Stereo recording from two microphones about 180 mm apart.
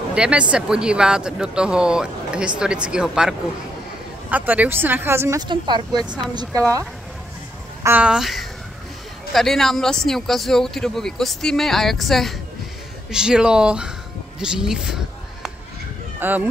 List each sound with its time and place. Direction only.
0.1 s speech: 5° right (ahead or behind)
5.5 s speech: 25° right (ahead or behind)
7.8 s speech: 10° right (ahead or behind)
16.2 s speech: 10° right (ahead or behind)